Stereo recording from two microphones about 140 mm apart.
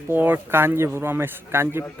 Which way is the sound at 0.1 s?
15° right (ahead or behind).